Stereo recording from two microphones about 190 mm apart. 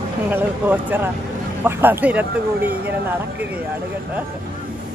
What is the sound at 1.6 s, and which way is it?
Speech, 10° right (ahead or behind).